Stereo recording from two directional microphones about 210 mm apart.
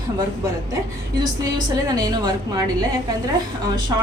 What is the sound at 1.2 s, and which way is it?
A woman's voice, 20° right (ahead or behind).